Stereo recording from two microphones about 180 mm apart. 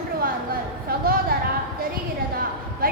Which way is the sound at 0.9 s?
55° right (ahead or behind).